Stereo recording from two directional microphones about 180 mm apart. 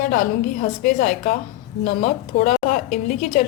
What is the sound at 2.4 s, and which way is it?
A woman's voice, 45° left (ahead or behind).